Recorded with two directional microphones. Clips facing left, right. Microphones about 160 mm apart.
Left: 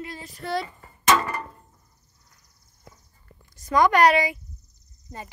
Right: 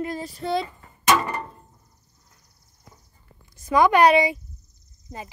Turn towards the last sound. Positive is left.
turn(degrees=-25)  # may be behind; listen again after turning